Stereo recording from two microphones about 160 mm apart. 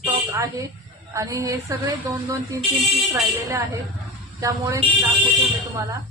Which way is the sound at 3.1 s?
20° right (ahead or behind).